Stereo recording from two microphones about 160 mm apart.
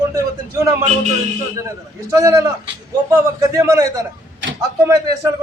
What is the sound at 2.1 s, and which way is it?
A man's voice, 20° right (ahead or behind).